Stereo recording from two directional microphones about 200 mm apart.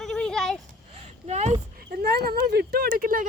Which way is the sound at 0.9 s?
35° right (ahead or behind).